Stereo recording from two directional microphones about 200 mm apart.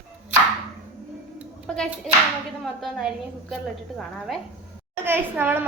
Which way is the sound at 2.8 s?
Centre (ahead or behind).